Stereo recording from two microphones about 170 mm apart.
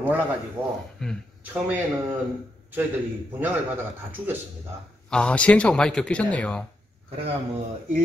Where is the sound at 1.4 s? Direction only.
10° right (ahead or behind).